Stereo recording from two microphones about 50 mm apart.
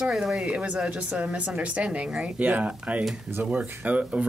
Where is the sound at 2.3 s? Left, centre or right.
Right.